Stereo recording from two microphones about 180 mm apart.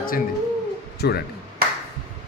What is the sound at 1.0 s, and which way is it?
Speech, 65° left (ahead or behind).